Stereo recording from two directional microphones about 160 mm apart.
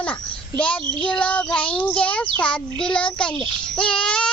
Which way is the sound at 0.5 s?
5° left (ahead or behind).